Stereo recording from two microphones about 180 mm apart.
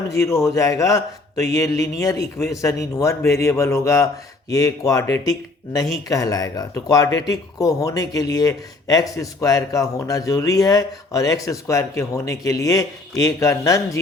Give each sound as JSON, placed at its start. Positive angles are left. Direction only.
{"t": 0.1, "sound": "speech", "side_deg": 15}